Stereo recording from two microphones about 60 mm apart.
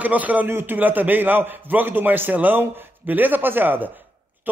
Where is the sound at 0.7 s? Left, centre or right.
Right.